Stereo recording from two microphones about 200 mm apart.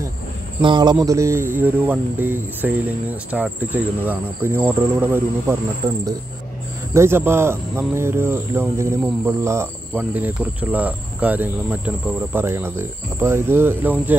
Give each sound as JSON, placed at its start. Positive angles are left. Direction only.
{"t": 0.6, "sound": "speech", "side_deg": -25}